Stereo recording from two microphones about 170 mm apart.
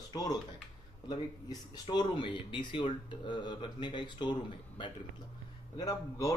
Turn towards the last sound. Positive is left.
turn(degrees=20)  # may be behind; listen again after turning